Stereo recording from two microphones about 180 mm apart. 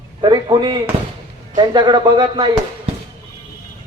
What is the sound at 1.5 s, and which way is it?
Speech, 25° right (ahead or behind).